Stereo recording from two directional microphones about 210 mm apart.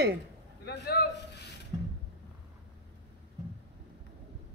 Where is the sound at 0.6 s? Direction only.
50° left (ahead or behind).